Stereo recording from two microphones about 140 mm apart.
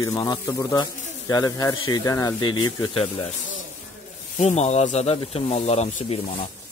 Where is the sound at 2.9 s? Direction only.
40° left (ahead or behind).